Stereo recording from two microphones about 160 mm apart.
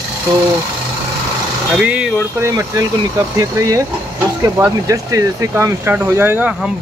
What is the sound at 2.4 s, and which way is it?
Speech, 20° right (ahead or behind).